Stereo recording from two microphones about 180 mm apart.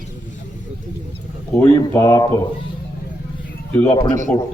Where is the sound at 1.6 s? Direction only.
15° left (ahead or behind).